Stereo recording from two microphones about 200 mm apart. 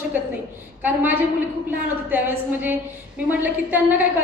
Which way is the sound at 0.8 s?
10° right (ahead or behind).